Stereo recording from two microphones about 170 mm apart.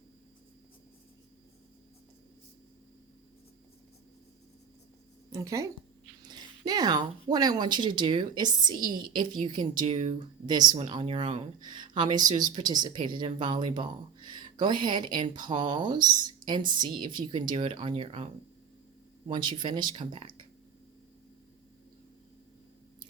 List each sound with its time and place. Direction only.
5.3 s speech: 20° right (ahead or behind)
19.3 s speech: 25° right (ahead or behind)